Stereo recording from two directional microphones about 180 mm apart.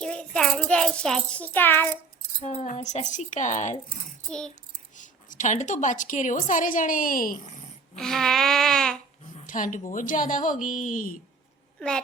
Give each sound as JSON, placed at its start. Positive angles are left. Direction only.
{"t": 0.0, "sound": "a child's voice", "side_deg": 5}
{"t": 2.4, "sound": "a woman's voice", "side_deg": 35}
{"t": 4.3, "sound": "a child's voice", "side_deg": 5}
{"t": 4.9, "sound": "a woman's voice", "side_deg": 45}
{"t": 7.9, "sound": "a child's voice", "side_deg": 0}
{"t": 9.5, "sound": "a woman's voice", "side_deg": 45}
{"t": 11.8, "sound": "a child's voice", "side_deg": 5}